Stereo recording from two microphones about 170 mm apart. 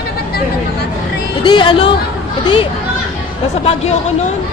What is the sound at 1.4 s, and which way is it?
Speech, 25° left (ahead or behind).